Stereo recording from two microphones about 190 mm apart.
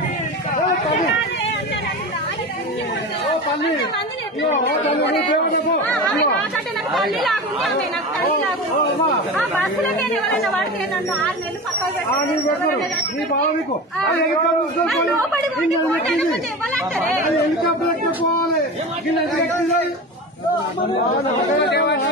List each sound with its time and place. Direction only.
5.9 s speech: centre (ahead or behind)
10.0 s speech: centre (ahead or behind)
21.6 s speech: 65° left (ahead or behind)